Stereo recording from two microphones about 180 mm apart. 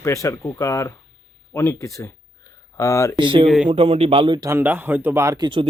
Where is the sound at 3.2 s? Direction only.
25° right (ahead or behind).